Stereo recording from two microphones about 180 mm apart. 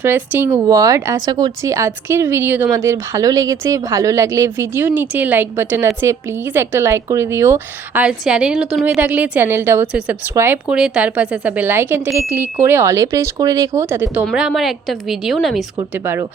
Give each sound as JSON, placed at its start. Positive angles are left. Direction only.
{"t": 0.0, "sound": "speech", "side_deg": -10}
{"t": 14.3, "sound": "a woman's voice", "side_deg": 0}